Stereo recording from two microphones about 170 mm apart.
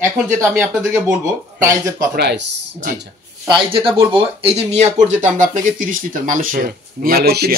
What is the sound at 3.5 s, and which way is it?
Speech, 30° right (ahead or behind).